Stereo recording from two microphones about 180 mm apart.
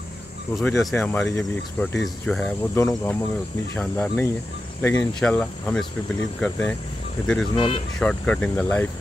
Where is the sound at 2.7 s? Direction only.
15° left (ahead or behind).